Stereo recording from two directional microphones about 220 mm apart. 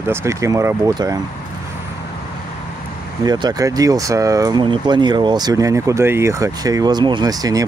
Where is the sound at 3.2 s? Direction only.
20° right (ahead or behind).